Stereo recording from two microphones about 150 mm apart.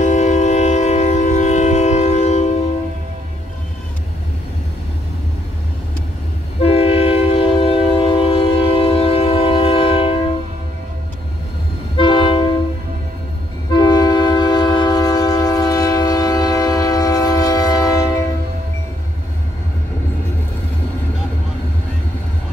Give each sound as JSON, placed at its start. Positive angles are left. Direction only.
{"t": 0.0, "sound": "train", "side_deg": 55}
{"t": 6.6, "sound": "train", "side_deg": 40}
{"t": 12.0, "sound": "train", "side_deg": 35}
{"t": 13.7, "sound": "train", "side_deg": 30}